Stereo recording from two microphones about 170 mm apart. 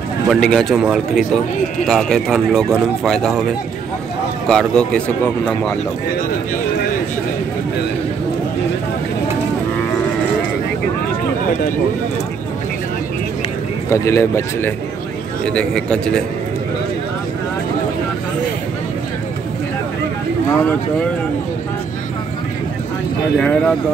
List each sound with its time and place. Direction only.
0.3 s speech: centre (ahead or behind)
4.5 s speech: 5° left (ahead or behind)
13.8 s speech: 15° left (ahead or behind)
15.4 s speech: 5° left (ahead or behind)
23.4 s speech: 5° left (ahead or behind)